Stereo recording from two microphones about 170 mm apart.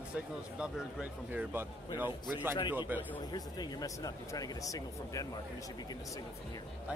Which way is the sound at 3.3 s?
25° left (ahead or behind).